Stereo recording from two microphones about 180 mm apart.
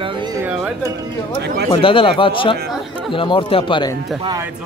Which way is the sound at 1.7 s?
30° left (ahead or behind).